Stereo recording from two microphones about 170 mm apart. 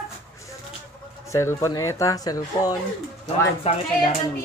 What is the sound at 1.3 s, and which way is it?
Speech, 15° left (ahead or behind).